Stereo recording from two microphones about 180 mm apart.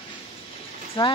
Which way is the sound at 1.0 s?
25° left (ahead or behind).